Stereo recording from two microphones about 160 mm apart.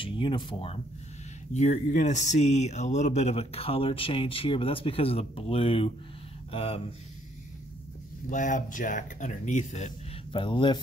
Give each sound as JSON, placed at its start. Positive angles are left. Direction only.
{"t": 0.0, "sound": "speech", "side_deg": 30}
{"t": 1.5, "sound": "speech", "side_deg": 45}
{"t": 8.3, "sound": "speech", "side_deg": 50}
{"t": 10.3, "sound": "speech", "side_deg": 30}